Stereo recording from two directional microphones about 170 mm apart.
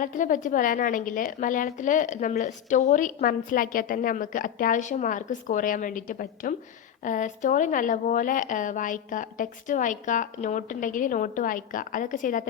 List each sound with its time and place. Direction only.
0.0 s speech: 50° left (ahead or behind)